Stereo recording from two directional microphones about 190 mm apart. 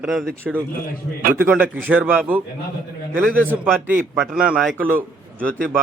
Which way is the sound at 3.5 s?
10° right (ahead or behind).